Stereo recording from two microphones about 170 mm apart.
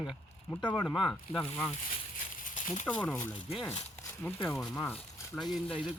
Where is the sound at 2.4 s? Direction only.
50° left (ahead or behind).